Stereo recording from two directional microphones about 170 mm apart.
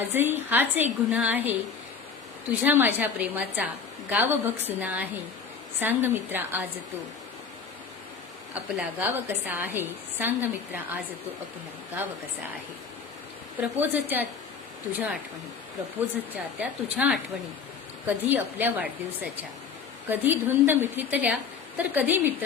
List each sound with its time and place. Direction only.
0.0 s a woman's voice: 15° right (ahead or behind)
8.5 s a woman's voice: 10° right (ahead or behind)
13.6 s a woman's voice: 10° right (ahead or behind)
16.3 s a woman's voice: 5° right (ahead or behind)